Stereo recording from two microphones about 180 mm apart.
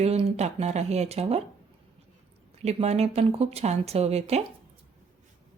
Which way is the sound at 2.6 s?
35° right (ahead or behind).